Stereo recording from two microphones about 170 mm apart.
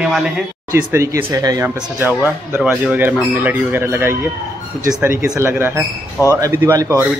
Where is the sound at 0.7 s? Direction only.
15° right (ahead or behind).